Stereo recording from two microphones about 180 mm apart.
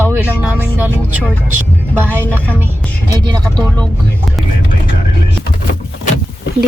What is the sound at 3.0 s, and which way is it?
Speech, 25° right (ahead or behind).